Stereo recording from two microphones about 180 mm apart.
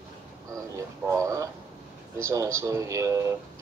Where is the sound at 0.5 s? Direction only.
15° right (ahead or behind).